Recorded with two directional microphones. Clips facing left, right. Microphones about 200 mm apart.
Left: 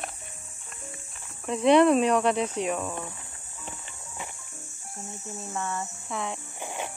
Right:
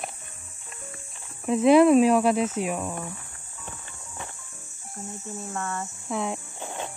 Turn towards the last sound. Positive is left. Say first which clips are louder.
# even
turn(degrees=15)  # may be behind; listen again after turning